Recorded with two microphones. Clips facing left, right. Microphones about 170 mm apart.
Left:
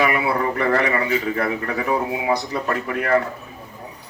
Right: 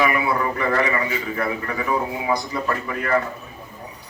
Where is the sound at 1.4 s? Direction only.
70° left (ahead or behind).